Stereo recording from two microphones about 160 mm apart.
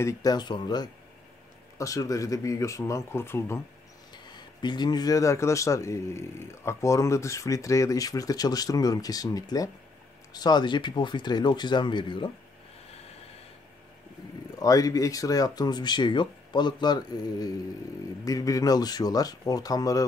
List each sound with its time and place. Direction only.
0.0 s speech: 25° left (ahead or behind)
4.1 s speech: 25° left (ahead or behind)
14.6 s speech: 20° left (ahead or behind)